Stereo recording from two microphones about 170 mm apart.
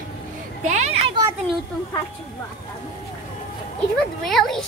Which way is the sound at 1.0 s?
25° right (ahead or behind).